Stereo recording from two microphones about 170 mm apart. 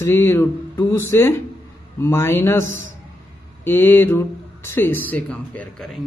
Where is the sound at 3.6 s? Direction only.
15° left (ahead or behind).